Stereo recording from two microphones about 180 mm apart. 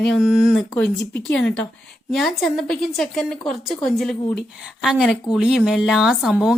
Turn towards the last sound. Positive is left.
turn(degrees=-5)  # may be behind; listen again after turning